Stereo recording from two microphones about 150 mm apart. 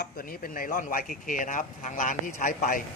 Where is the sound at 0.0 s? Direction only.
75° left (ahead or behind).